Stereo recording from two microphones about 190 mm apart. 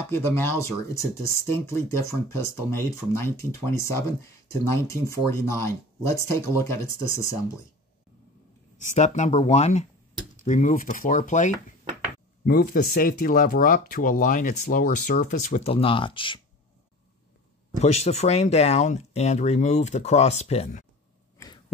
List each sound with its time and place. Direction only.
0.1 s speech: 15° left (ahead or behind)
8.7 s speech: 40° left (ahead or behind)
12.4 s speech: 50° left (ahead or behind); by 16.3 s 25° left (ahead or behind)
17.8 s speech: 35° left (ahead or behind)